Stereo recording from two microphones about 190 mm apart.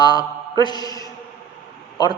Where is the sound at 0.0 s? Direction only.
20° left (ahead or behind).